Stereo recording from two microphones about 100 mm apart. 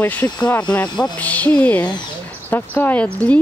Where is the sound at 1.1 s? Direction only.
15° left (ahead or behind).